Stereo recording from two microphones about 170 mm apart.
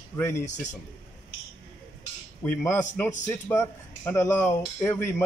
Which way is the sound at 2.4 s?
15° left (ahead or behind).